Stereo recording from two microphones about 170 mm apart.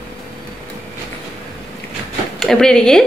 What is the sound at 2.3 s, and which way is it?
Speech, 5° left (ahead or behind).